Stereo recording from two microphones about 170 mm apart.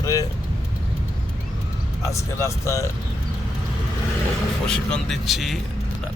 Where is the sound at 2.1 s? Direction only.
20° left (ahead or behind).